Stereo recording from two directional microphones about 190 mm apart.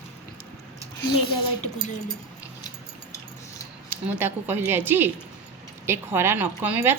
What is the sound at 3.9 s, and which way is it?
A woman's voice, 10° right (ahead or behind).